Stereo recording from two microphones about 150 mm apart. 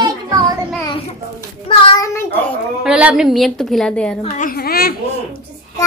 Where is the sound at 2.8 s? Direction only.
5° right (ahead or behind).